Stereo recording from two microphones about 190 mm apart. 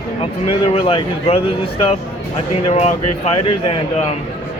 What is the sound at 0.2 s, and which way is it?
Speech, 30° left (ahead or behind).